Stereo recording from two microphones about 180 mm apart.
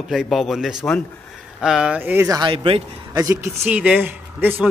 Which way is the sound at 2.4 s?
30° right (ahead or behind).